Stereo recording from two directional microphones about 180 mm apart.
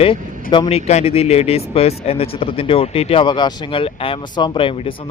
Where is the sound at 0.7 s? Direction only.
35° left (ahead or behind).